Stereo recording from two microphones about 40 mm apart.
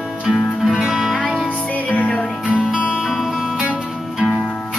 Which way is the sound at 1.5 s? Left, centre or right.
Left.